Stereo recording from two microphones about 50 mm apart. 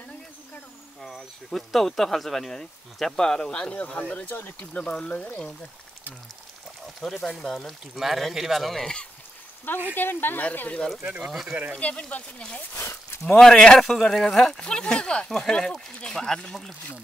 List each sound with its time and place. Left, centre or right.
1.0 s speech: centre; by 3.9 s left
4.3 s speech: left
4.6 s speech: left
7.0 s speech: centre
9.9 s speech: left
11.1 s speech: centre
11.8 s speech: left
12.7 s a sound: left
13.3 s speech: centre